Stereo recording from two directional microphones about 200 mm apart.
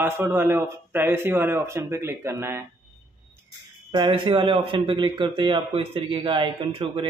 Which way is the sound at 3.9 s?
25° right (ahead or behind).